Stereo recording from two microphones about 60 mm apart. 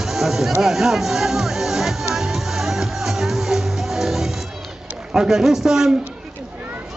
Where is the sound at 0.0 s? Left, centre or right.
Centre.